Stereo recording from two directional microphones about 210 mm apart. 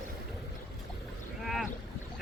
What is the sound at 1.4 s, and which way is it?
Boat, centre (ahead or behind).